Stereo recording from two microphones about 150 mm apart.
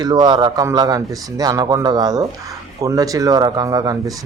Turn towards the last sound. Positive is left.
turn(degrees=-25)  # may be behind; listen again after turning